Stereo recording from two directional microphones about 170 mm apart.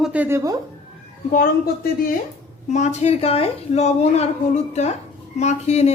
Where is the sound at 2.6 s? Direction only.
45° left (ahead or behind).